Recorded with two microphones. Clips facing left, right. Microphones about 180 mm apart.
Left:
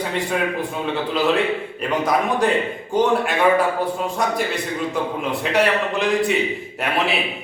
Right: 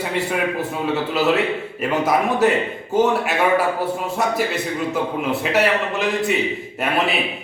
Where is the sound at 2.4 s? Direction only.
5° right (ahead or behind).